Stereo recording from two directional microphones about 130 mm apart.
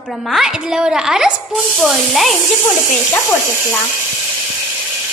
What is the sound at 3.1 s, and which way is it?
Speech, 20° left (ahead or behind).